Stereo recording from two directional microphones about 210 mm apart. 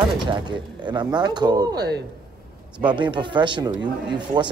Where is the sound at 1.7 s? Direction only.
55° right (ahead or behind).